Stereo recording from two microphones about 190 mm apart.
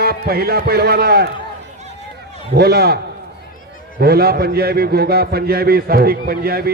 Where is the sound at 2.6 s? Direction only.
55° right (ahead or behind).